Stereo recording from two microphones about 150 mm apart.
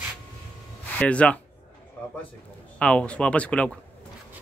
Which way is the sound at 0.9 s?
10° left (ahead or behind).